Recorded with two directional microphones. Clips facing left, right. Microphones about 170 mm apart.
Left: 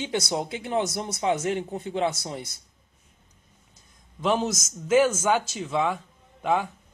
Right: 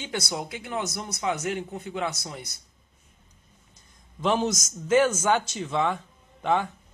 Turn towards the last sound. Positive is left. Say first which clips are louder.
# even
turn(degrees=5)  # may be behind; listen again after turning